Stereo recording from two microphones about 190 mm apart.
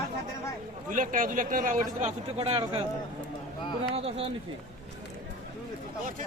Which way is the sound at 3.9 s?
30° right (ahead or behind).